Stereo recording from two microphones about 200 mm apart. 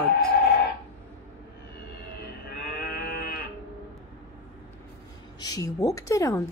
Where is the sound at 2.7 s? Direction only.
50° left (ahead or behind).